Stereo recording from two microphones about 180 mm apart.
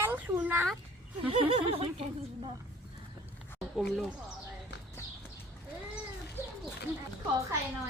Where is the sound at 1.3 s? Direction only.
30° right (ahead or behind).